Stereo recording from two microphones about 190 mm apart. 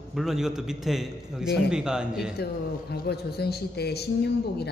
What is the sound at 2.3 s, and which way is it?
A man's voice, 60° left (ahead or behind).